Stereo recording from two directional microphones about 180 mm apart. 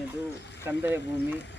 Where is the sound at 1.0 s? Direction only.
75° left (ahead or behind).